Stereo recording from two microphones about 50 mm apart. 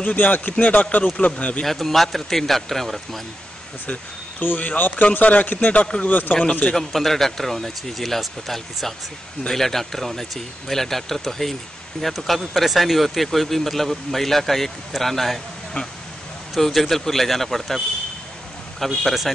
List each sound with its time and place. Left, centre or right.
0.0 s speech: left
1.0 s speech: centre
1.6 s speech: centre
3.8 s a man's voice: left
6.7 s speech: centre
16.5 s speech: centre
19.0 s speech: centre